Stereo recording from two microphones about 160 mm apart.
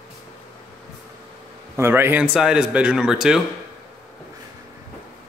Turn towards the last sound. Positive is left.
turn(degrees=-5)  # may be behind; listen again after turning